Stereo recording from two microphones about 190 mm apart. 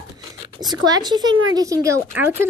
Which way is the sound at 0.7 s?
20° right (ahead or behind).